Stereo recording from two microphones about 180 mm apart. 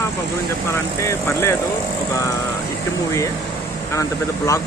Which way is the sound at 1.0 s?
15° left (ahead or behind).